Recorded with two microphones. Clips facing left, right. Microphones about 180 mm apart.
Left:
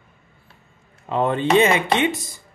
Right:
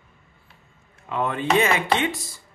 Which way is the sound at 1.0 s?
30° left (ahead or behind).